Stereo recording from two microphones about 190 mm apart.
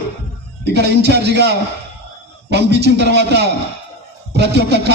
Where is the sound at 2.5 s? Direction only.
60° right (ahead or behind).